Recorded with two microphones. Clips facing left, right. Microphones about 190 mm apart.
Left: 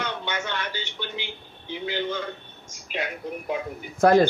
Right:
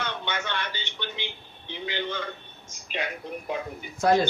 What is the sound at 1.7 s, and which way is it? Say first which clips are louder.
A man's voice: left 3 dB; 10° left (ahead or behind).